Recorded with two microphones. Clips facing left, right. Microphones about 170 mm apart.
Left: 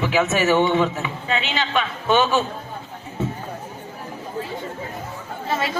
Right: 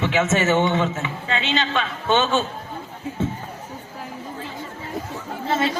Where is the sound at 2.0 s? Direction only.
25° right (ahead or behind).